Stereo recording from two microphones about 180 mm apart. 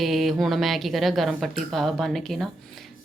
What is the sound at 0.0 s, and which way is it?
A woman's voice, centre (ahead or behind).